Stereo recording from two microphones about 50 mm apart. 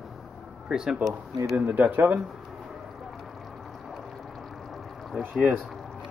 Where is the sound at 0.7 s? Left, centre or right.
Centre.